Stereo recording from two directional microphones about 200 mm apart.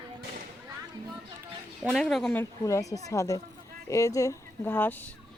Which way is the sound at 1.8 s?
Centre (ahead or behind).